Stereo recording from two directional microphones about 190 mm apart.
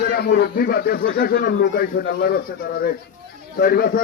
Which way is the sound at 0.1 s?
55° left (ahead or behind).